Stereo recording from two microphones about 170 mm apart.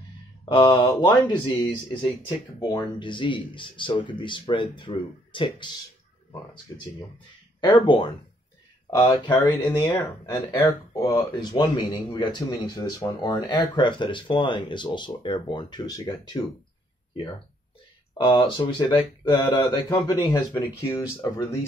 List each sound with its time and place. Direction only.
0.5 s speech: 25° left (ahead or behind)
7.6 s speech: 25° left (ahead or behind)
9.1 s speech: 25° left (ahead or behind)
9.8 s speech: 15° left (ahead or behind)
18.3 s speech: 30° left (ahead or behind)